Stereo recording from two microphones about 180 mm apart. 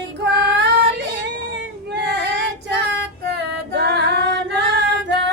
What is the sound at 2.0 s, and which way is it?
Child singing, 70° right (ahead or behind).